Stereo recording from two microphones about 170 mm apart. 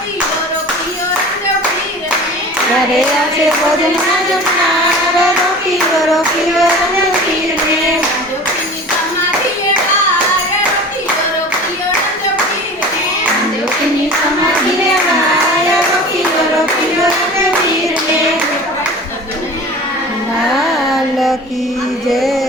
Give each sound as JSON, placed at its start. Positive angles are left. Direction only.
{"t": 6.1, "sound": "child singing", "side_deg": 0}
{"t": 22.1, "sound": "music", "side_deg": 0}